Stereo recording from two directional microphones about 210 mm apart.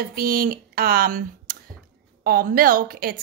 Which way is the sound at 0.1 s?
45° right (ahead or behind).